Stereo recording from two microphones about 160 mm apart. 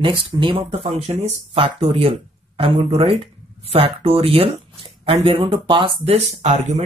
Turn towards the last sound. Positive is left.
turn(degrees=-45)  # may be behind; listen again after turning